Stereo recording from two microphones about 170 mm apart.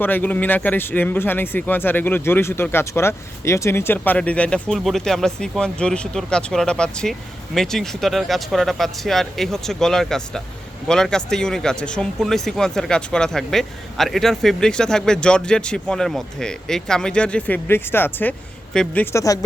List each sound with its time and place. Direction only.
0.0 s speech: 10° left (ahead or behind)
19.1 s speech: 20° left (ahead or behind)